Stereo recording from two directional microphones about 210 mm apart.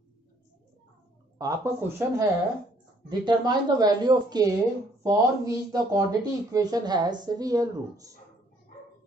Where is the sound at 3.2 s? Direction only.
20° right (ahead or behind).